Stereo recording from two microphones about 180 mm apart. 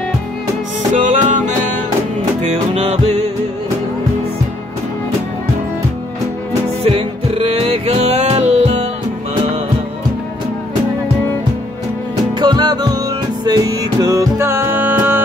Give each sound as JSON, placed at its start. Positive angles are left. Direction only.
{"t": 0.9, "sound": "music", "side_deg": -45}
{"t": 2.4, "sound": "music", "side_deg": -40}
{"t": 6.8, "sound": "music", "side_deg": -35}
{"t": 12.4, "sound": "music", "side_deg": -25}